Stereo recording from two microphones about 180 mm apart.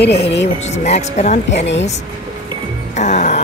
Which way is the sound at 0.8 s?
40° left (ahead or behind).